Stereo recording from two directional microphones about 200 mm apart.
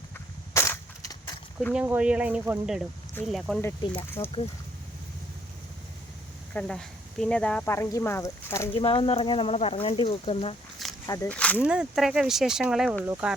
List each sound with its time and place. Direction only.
0.5 s crushing: 15° left (ahead or behind)
1.5 s speech: 5° right (ahead or behind)
3.6 s speech: 10° left (ahead or behind)
6.5 s speech: 5° left (ahead or behind)
8.7 s speech: 25° left (ahead or behind)
11.0 s speech: 15° left (ahead or behind)
11.6 s speech: 5° right (ahead or behind)